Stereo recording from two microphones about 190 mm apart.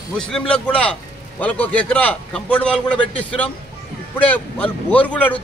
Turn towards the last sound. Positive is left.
turn(degrees=10)  # may be behind; listen again after turning